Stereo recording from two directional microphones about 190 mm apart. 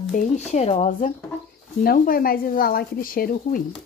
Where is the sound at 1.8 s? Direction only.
50° left (ahead or behind).